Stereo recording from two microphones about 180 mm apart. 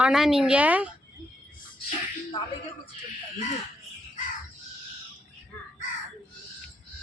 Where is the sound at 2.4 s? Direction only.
30° left (ahead or behind).